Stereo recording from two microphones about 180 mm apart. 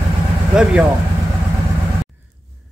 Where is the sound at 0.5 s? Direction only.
5° right (ahead or behind).